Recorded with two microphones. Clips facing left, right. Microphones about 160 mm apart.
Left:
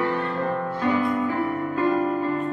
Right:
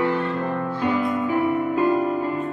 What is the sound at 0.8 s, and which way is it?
Music, 15° right (ahead or behind).